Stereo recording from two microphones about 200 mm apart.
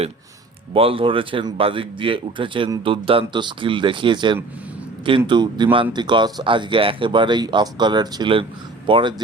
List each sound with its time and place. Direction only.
0.7 s speech: 25° right (ahead or behind)